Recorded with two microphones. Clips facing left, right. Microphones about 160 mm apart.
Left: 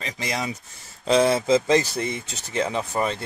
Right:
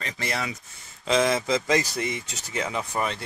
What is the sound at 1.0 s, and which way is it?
Speech, 35° left (ahead or behind).